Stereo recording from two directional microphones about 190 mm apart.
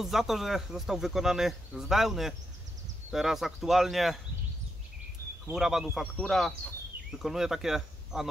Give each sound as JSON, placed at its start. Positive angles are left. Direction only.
{"t": 0.0, "sound": "speech", "side_deg": 0}
{"t": 5.5, "sound": "speech", "side_deg": 0}